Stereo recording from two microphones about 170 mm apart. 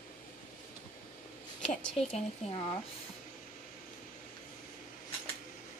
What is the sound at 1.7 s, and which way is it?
Speech, 5° left (ahead or behind).